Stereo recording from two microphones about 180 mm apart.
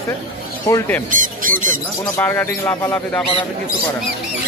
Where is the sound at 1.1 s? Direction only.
50° right (ahead or behind).